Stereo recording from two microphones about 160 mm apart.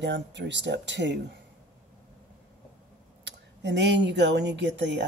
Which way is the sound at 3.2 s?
90° right.